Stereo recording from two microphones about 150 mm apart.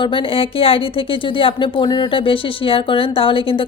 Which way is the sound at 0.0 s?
35° left (ahead or behind).